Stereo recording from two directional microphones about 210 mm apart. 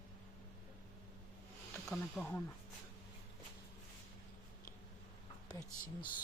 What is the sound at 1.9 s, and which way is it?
Speech, 5° left (ahead or behind).